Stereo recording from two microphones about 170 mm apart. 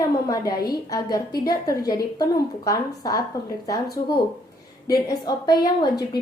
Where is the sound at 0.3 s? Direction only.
20° left (ahead or behind).